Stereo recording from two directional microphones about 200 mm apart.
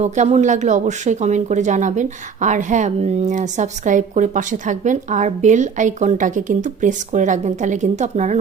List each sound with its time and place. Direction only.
0.0 s speech: 35° right (ahead or behind)